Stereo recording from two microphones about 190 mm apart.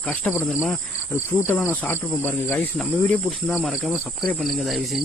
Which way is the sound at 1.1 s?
10° left (ahead or behind).